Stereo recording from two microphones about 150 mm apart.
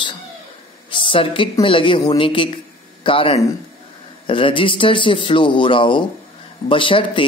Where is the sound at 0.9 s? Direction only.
35° left (ahead or behind).